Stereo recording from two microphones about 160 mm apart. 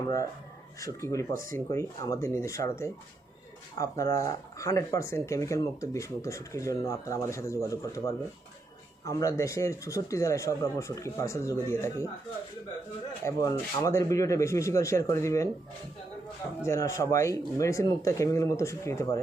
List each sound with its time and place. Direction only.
1.0 s speech: 20° left (ahead or behind)
1.3 s speech: 60° right (ahead or behind)
1.5 s speech: 20° left (ahead or behind)
13.2 s speech: 20° left (ahead or behind)
16.6 s speech: 20° left (ahead or behind)